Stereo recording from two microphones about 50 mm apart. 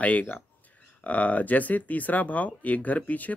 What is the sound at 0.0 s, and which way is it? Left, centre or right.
Speech, left.